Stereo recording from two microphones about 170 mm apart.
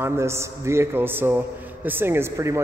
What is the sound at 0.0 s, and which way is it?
Speech, 15° right (ahead or behind).